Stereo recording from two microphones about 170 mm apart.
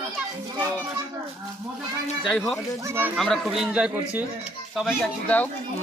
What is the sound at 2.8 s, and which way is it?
Speech, 15° right (ahead or behind).